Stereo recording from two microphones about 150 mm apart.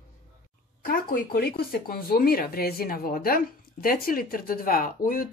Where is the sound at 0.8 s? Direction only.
75° left (ahead or behind).